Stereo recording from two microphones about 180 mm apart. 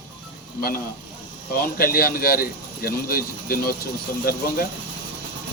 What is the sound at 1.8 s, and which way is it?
Speech, 55° left (ahead or behind).